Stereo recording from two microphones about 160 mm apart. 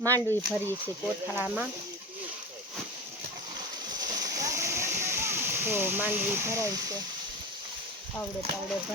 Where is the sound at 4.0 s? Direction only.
20° right (ahead or behind).